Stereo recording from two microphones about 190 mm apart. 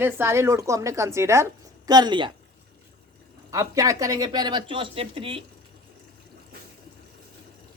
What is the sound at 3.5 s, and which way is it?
Speech, 15° right (ahead or behind).